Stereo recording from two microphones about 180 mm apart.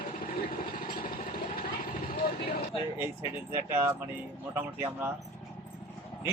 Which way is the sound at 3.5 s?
15° right (ahead or behind).